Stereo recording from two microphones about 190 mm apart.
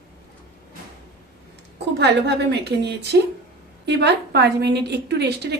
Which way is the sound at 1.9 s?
60° right (ahead or behind).